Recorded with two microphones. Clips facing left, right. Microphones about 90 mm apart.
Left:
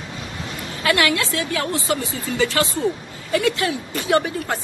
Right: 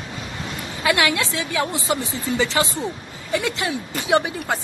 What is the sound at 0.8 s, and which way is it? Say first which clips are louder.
A woman's voice: left 1 dB; 20° right (ahead or behind).